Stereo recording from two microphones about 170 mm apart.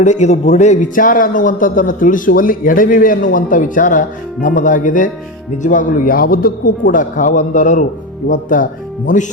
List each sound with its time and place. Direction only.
0.0 s a man's voice: 45° left (ahead or behind)